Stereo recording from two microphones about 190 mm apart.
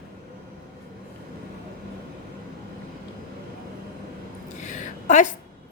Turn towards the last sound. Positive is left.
turn(degrees=40)  # may be behind; listen again after turning